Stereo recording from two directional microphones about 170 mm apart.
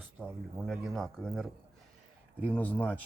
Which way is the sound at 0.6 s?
Centre (ahead or behind).